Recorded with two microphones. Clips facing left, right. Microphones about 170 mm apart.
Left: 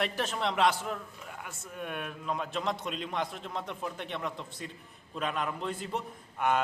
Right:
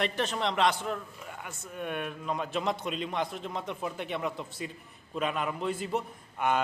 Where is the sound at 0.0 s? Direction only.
5° left (ahead or behind).